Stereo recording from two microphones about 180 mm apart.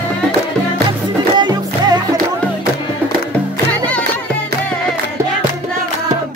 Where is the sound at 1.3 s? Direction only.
25° right (ahead or behind).